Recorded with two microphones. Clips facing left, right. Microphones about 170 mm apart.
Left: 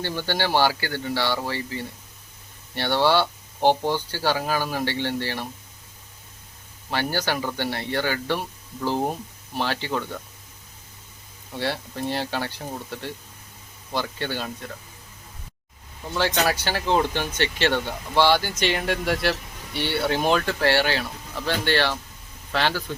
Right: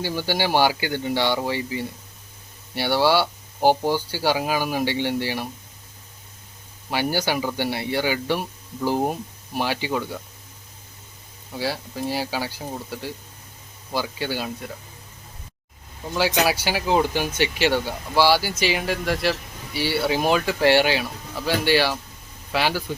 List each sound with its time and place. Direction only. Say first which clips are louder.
0.0 s speech: right 2 dB; 10° right (ahead or behind)
6.9 s speech: right 2 dB; 10° right (ahead or behind)
11.5 s speech: right 1 dB; 5° right (ahead or behind)
16.1 s speech: right 2 dB; 10° right (ahead or behind)